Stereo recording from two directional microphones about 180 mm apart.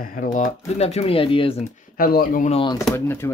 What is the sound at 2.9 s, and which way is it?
Speech, 15° left (ahead or behind).